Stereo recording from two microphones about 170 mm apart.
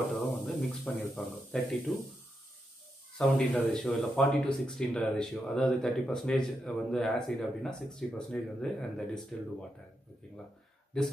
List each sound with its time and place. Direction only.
0.6 s speech: centre (ahead or behind)
3.2 s speech: 5° left (ahead or behind)
10.9 s speech: 5° left (ahead or behind)